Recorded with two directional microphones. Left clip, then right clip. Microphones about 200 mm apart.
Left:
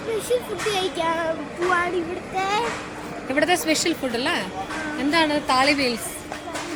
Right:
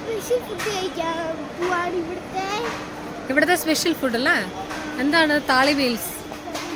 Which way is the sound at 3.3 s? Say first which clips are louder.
Right 1 dB; 30° right (ahead or behind).